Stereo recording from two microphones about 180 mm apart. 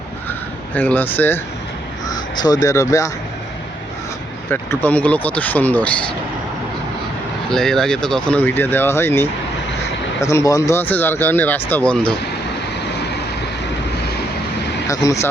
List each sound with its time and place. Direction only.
0.3 s a sound: 10° left (ahead or behind)
2.0 s speech: 25° left (ahead or behind)
4.5 s speech: 10° left (ahead or behind)
7.5 s speech: 5° left (ahead or behind)
14.8 s speech: 15° left (ahead or behind)